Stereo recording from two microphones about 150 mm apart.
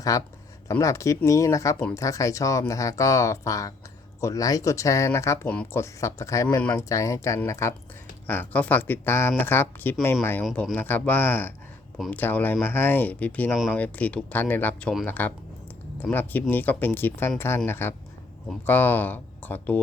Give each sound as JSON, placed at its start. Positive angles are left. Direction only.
{"t": 0.0, "sound": "speech", "side_deg": 20}
{"t": 13.7, "sound": "speech", "side_deg": 10}